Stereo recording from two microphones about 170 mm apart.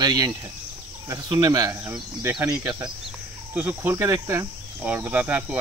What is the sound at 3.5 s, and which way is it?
Speech, 10° right (ahead or behind).